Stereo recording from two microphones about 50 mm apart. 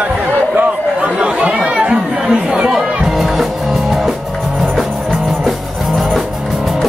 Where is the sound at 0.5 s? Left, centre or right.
Right.